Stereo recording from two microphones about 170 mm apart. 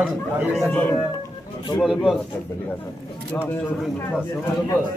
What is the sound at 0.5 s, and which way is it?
Speech, 5° left (ahead or behind).